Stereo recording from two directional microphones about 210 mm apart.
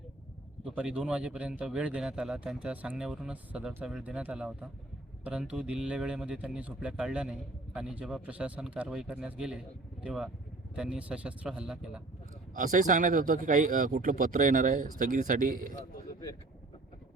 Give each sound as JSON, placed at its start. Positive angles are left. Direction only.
{"t": 0.6, "sound": "a man's voice", "side_deg": -5}
{"t": 12.5, "sound": "speech", "side_deg": -40}